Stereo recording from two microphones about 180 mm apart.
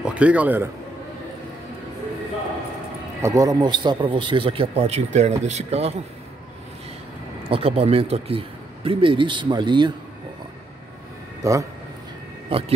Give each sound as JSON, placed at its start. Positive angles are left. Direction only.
{"t": 0.0, "sound": "a man's voice", "side_deg": -5}
{"t": 3.2, "sound": "speech", "side_deg": -15}
{"t": 7.4, "sound": "speech", "side_deg": -30}
{"t": 11.4, "sound": "speech", "side_deg": -15}
{"t": 12.4, "sound": "speech", "side_deg": -30}